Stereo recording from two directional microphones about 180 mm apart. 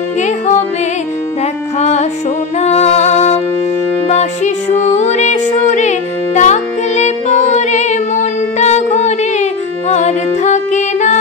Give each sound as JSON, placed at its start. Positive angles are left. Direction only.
{"t": 1.8, "sound": "music", "side_deg": 40}